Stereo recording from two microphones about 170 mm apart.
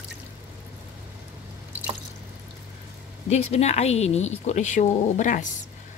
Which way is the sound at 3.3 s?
40° left (ahead or behind).